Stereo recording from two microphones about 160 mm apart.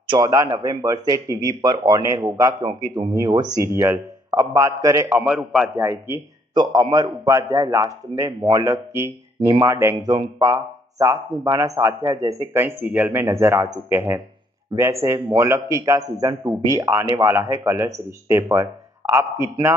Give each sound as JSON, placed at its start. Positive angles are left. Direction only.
{"t": 0.1, "sound": "a man's voice", "side_deg": -20}
{"t": 5.8, "sound": "a man's voice", "side_deg": -15}